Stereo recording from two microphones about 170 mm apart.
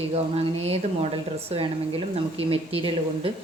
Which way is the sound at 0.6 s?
35° right (ahead or behind).